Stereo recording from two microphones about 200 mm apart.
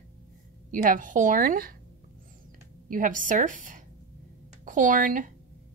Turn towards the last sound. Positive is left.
turn(degrees=-40)  # may be behind; listen again after turning